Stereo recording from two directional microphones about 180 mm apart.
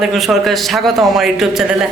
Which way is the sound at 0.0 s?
Centre (ahead or behind).